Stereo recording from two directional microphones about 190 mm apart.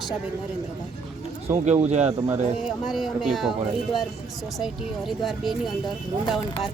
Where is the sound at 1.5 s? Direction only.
35° right (ahead or behind).